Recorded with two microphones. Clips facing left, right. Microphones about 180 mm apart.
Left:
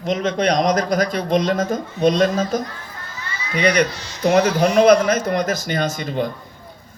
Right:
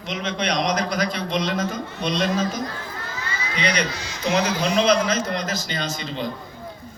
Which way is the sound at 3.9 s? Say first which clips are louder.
Right 1 dB; 90° right.